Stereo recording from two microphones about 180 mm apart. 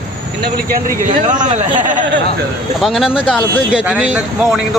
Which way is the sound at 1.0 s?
45° right (ahead or behind).